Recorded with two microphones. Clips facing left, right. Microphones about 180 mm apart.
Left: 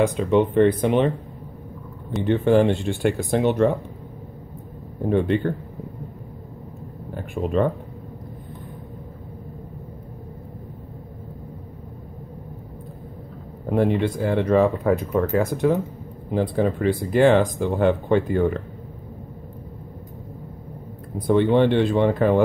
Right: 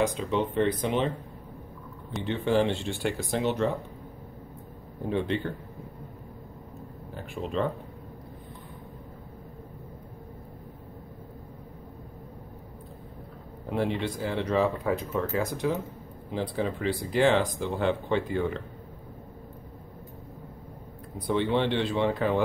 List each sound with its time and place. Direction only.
0.0 s speech: 55° left (ahead or behind)
2.2 s speech: 50° left (ahead or behind)
5.1 s speech: 55° left (ahead or behind)
7.2 s speech: 55° left (ahead or behind)
13.7 s speech: 50° left (ahead or behind)
21.3 s speech: 50° left (ahead or behind)